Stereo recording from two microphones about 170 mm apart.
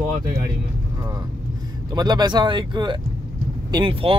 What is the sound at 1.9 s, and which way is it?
Speech, 25° right (ahead or behind).